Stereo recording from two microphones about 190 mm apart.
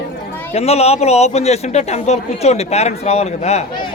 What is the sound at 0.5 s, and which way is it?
A man's voice, 35° left (ahead or behind).